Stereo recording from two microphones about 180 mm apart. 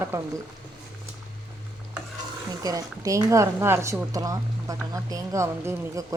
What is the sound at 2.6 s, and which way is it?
A woman's voice, 20° right (ahead or behind).